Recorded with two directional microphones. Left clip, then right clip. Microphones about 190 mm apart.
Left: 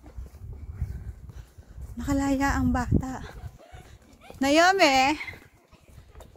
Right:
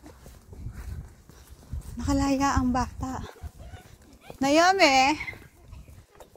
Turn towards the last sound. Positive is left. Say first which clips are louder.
# right 1 dB
turn(degrees=15)  # may be behind; listen again after turning